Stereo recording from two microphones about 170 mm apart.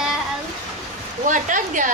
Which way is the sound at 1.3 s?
50° right (ahead or behind).